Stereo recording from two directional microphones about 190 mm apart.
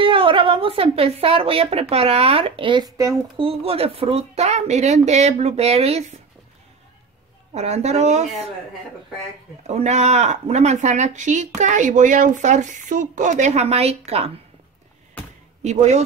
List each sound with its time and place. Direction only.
0.0 s speech: 25° right (ahead or behind)
3.4 s speech: 30° right (ahead or behind)
7.5 s speech: 35° right (ahead or behind)
9.6 s speech: 35° right (ahead or behind)
15.6 s speech: 35° right (ahead or behind)